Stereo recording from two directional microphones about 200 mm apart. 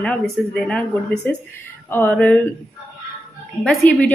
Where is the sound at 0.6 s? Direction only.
5° left (ahead or behind).